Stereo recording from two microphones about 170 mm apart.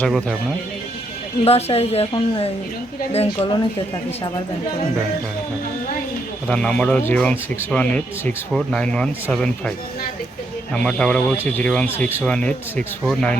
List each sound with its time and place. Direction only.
0.0 s speech: centre (ahead or behind)
1.5 s a woman's voice: 35° left (ahead or behind)
6.5 s speech: 5° left (ahead or behind)
10.8 s speech: 5° left (ahead or behind)